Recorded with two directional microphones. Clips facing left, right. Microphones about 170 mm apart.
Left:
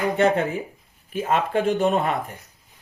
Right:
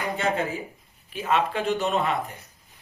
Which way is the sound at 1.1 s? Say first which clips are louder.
Left 3 dB; 50° left (ahead or behind).